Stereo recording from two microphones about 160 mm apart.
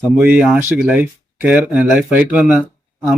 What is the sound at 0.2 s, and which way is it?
Speech, 10° right (ahead or behind).